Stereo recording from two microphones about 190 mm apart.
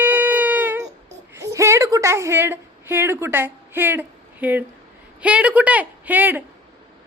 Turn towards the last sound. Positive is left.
turn(degrees=-10)  # may be behind; listen again after turning